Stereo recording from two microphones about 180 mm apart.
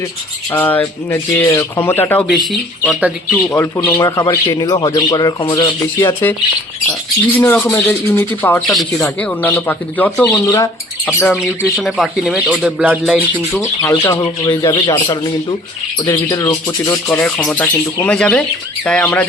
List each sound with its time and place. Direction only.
0.5 s speech: 10° left (ahead or behind)
3.5 s speech: 15° left (ahead or behind)
7.3 s speech: 10° left (ahead or behind)
11.3 s speech: centre (ahead or behind)
13.5 s speech: 15° left (ahead or behind)